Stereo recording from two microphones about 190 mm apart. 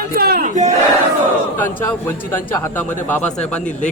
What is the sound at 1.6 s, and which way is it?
A man's voice, 10° left (ahead or behind).